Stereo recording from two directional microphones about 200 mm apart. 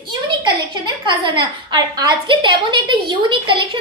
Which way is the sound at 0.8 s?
25° right (ahead or behind).